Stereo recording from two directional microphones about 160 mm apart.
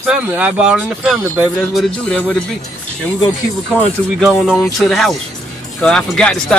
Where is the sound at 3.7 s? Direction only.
Centre (ahead or behind).